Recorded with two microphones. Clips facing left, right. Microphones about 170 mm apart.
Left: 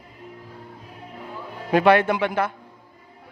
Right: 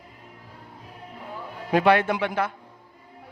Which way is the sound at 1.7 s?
60° left (ahead or behind).